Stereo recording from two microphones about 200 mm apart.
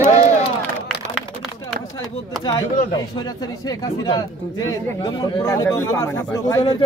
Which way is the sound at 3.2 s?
20° left (ahead or behind).